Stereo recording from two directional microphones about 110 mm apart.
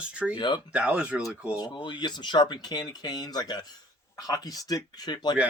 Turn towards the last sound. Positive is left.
turn(degrees=40)  # may be behind; listen again after turning